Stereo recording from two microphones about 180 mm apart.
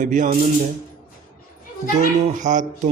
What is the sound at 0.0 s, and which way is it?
Speech, 45° right (ahead or behind).